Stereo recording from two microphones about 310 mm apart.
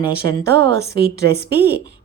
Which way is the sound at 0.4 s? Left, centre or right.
Right.